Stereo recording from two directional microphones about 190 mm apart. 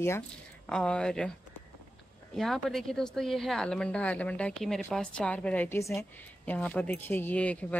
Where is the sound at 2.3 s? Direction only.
Centre (ahead or behind).